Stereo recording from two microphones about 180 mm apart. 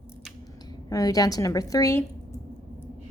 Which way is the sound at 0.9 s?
20° left (ahead or behind).